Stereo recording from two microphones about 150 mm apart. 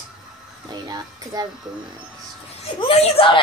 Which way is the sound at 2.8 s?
40° left (ahead or behind).